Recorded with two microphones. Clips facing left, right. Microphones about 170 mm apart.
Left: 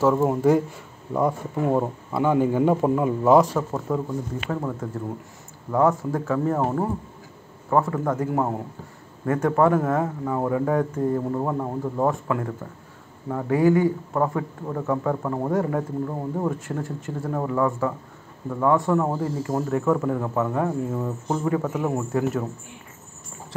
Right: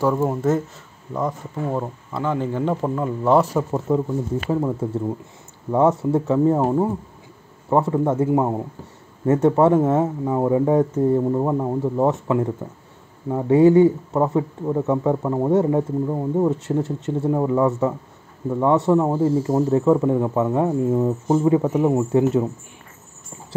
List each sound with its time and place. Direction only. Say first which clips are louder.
0.0 s a man's voice: left 1 dB; 5° left (ahead or behind)
3.5 s speech: right 4 dB; 20° right (ahead or behind)